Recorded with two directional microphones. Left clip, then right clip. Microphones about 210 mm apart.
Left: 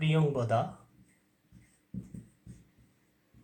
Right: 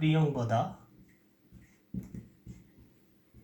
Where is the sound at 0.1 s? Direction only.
15° left (ahead or behind).